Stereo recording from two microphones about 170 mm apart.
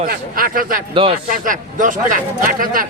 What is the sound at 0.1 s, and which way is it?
A man's voice, 55° right (ahead or behind).